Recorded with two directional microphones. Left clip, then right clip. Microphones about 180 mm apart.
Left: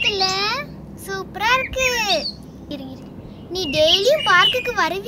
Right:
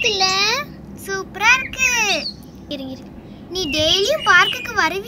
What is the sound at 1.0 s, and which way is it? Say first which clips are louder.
A child's voice: right 5 dB; 30° left (ahead or behind).